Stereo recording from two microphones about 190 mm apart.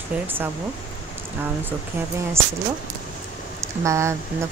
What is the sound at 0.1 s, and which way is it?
Speech, 5° right (ahead or behind).